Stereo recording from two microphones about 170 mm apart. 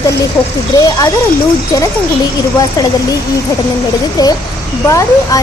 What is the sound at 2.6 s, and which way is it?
Speech, 20° left (ahead or behind).